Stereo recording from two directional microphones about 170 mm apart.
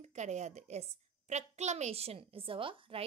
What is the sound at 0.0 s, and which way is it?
A woman's voice, 45° right (ahead or behind).